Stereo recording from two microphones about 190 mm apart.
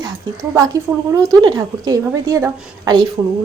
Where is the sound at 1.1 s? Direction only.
15° right (ahead or behind).